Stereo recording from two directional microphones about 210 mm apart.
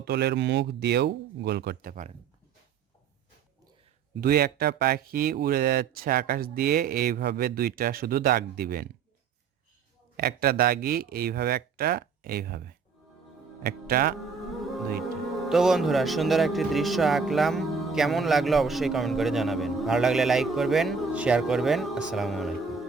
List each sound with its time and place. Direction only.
0.0 s speech: 50° right (ahead or behind)
4.2 s speech: 45° right (ahead or behind)
10.2 s speech: 45° right (ahead or behind)
14.2 s music: centre (ahead or behind)
15.0 s speech: centre (ahead or behind)